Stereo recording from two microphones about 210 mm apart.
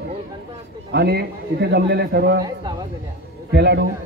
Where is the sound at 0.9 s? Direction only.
50° right (ahead or behind).